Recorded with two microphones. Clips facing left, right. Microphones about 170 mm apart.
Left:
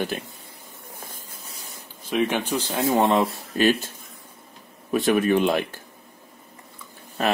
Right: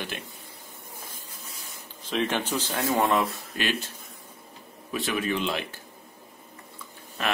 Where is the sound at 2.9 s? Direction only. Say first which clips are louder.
Left 4 dB; 30° left (ahead or behind).